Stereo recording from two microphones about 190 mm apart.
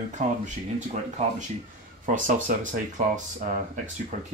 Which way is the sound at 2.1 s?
40° right (ahead or behind).